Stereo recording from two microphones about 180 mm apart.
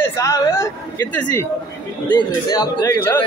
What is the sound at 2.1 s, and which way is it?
A man's voice, 25° left (ahead or behind).